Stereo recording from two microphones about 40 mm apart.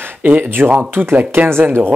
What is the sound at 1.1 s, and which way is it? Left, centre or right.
Speech, right.